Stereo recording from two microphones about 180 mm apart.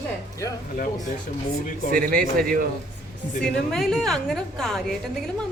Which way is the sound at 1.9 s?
50° right (ahead or behind).